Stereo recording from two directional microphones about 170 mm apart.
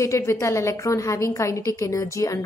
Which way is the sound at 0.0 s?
15° left (ahead or behind).